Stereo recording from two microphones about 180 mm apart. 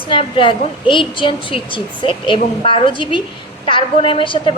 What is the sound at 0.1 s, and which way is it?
A woman's voice, 30° left (ahead or behind).